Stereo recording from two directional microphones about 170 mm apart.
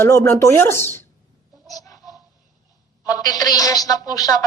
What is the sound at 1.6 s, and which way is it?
Goose, 20° left (ahead or behind).